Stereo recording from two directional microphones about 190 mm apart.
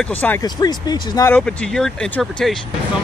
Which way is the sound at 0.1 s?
10° left (ahead or behind).